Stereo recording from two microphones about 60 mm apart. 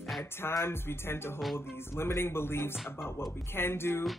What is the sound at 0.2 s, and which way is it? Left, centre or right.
Speech, left.